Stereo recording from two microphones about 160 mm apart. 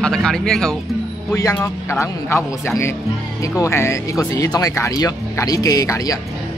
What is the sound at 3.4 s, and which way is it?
A man's voice, 20° left (ahead or behind).